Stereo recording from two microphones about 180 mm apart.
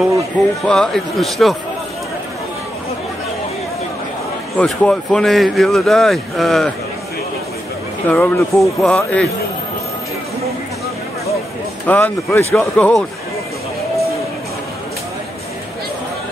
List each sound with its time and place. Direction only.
0.7 s speech: 5° left (ahead or behind)
4.6 s speech: 5° left (ahead or behind)
8.1 s speech: 10° left (ahead or behind)
11.8 s speech: 10° left (ahead or behind)